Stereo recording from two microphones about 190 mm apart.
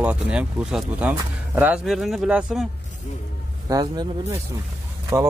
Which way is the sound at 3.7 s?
20° right (ahead or behind).